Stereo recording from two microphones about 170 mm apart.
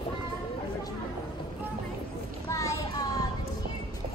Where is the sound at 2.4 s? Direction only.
20° left (ahead or behind).